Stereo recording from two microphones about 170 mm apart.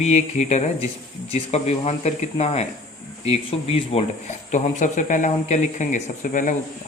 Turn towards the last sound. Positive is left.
turn(degrees=50)  # may be behind; listen again after turning